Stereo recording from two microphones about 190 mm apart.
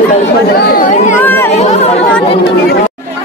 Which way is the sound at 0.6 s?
50° left (ahead or behind).